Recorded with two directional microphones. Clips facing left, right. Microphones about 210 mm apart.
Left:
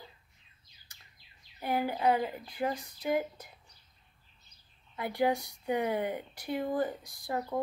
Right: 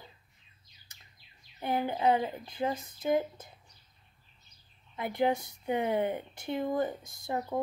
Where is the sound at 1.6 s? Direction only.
20° right (ahead or behind).